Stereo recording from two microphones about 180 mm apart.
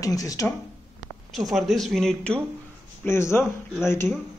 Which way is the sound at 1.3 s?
Centre (ahead or behind).